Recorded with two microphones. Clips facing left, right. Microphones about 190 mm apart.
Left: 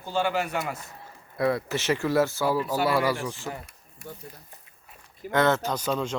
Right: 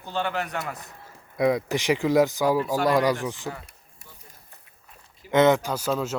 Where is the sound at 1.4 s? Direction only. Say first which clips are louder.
Right 3 dB; 15° right (ahead or behind).